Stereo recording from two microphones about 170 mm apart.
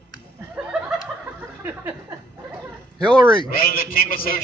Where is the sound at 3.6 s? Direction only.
60° left (ahead or behind).